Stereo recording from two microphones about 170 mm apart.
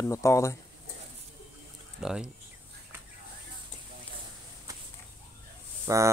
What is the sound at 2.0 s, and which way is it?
Speech, 5° right (ahead or behind).